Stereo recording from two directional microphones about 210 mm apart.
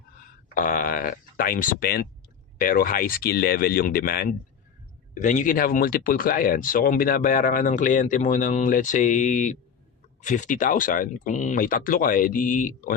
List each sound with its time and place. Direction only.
0.5 s speech: 40° left (ahead or behind)